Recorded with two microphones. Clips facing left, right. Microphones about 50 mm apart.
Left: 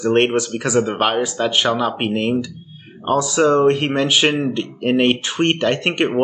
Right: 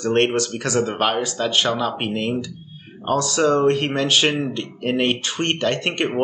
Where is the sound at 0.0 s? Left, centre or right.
Centre.